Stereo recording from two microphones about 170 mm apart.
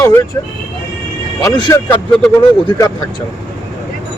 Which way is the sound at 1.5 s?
25° left (ahead or behind).